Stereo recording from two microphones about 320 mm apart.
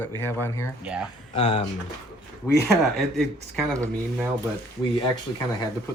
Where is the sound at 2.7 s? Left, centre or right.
Centre.